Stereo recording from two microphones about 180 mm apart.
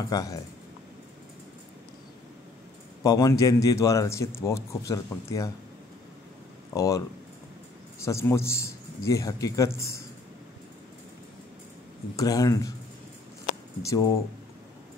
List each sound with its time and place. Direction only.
0.1 s speech: 20° left (ahead or behind)
3.0 s a man's voice: 20° left (ahead or behind)
6.7 s speech: 20° left (ahead or behind)
8.0 s a man's voice: 15° left (ahead or behind)
12.2 s speech: 20° left (ahead or behind)
13.8 s speech: 20° left (ahead or behind)